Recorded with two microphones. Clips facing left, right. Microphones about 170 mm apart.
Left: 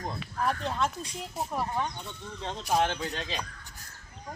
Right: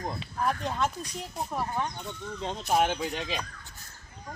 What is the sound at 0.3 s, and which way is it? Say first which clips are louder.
Speech: even; centre (ahead or behind).